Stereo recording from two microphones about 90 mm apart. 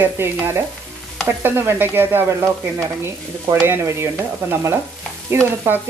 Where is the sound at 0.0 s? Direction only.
25° right (ahead or behind).